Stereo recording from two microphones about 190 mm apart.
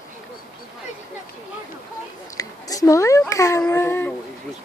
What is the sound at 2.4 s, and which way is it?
Speech, 20° left (ahead or behind).